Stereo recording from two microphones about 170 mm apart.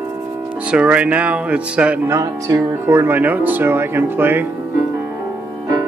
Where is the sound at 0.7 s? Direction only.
5° right (ahead or behind).